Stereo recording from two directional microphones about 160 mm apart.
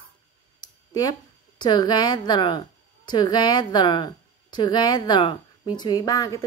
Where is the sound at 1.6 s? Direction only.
25° left (ahead or behind).